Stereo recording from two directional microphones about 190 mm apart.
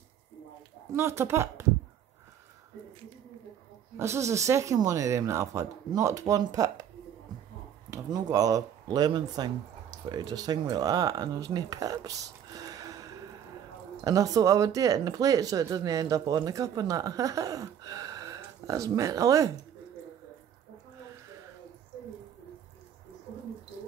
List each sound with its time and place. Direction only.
0.9 s speech: 15° right (ahead or behind)
3.9 s speech: 15° right (ahead or behind)
7.9 s speech: 20° right (ahead or behind)
12.5 s gasp: 20° right (ahead or behind)
14.0 s speech: 20° right (ahead or behind)